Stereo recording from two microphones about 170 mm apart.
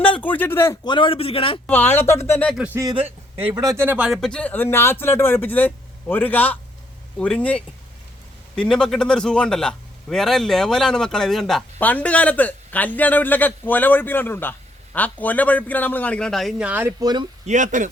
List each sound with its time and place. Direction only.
0.2 s speech: 10° left (ahead or behind)
0.9 s a man's voice: 30° left (ahead or behind)
1.6 s speech: 10° left (ahead or behind)
2.6 s speech: 10° right (ahead or behind)
2.8 s a man's voice: 35° right (ahead or behind)
3.5 s a man's voice: 20° right (ahead or behind)
17.0 s speech: 25° right (ahead or behind)
17.4 s speech: 45° right (ahead or behind)